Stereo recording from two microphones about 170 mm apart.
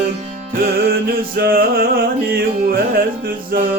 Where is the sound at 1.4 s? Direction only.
60° right (ahead or behind).